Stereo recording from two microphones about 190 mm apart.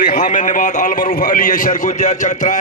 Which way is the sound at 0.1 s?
40° left (ahead or behind).